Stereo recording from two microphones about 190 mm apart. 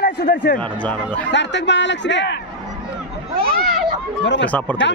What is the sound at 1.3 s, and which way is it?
A man's voice, 70° left (ahead or behind).